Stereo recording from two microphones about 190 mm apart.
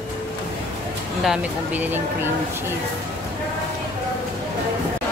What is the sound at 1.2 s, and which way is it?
Speech, 5° right (ahead or behind).